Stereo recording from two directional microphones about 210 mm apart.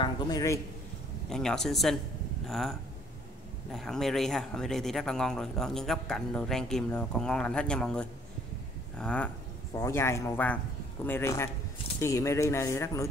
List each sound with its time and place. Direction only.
0.0 s speech: 15° left (ahead or behind)
1.3 s speech: 5° left (ahead or behind)
3.7 s speech: centre (ahead or behind)